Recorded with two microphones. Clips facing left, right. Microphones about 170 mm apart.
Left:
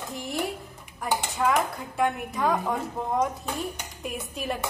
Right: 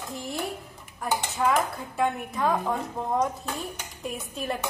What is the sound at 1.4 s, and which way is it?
A woman's voice, centre (ahead or behind).